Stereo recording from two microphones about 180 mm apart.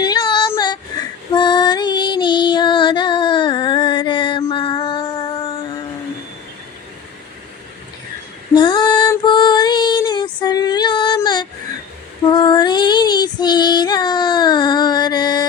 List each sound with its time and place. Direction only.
0.0 s a sound: 25° left (ahead or behind)
1.3 s female singing: 25° left (ahead or behind)
8.5 s female singing: 25° left (ahead or behind)